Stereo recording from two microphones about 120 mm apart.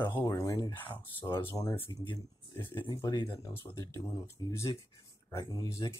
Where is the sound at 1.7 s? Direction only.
50° left (ahead or behind).